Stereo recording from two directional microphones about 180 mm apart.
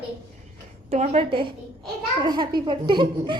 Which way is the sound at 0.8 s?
35° right (ahead or behind).